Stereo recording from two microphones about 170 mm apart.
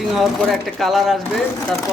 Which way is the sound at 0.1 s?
Centre (ahead or behind).